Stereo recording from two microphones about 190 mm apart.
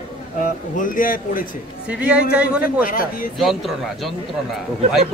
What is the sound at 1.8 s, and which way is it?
Speech, 5° right (ahead or behind).